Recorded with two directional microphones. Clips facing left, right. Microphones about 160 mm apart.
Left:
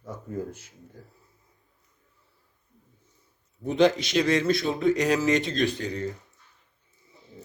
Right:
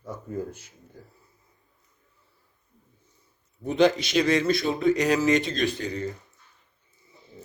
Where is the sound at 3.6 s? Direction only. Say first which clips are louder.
Even; 5° right (ahead or behind).